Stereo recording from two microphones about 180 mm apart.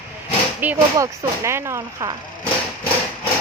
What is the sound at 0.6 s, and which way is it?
Speech, 15° right (ahead or behind).